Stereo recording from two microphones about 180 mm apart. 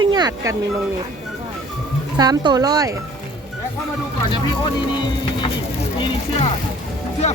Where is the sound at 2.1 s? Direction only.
25° right (ahead or behind).